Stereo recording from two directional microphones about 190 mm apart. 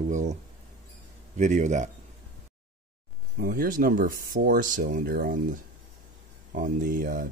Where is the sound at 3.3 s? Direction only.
50° right (ahead or behind).